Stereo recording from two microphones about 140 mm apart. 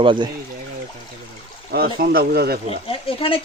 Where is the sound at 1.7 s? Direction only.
90° right.